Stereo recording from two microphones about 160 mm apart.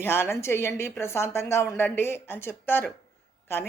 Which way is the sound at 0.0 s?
15° left (ahead or behind).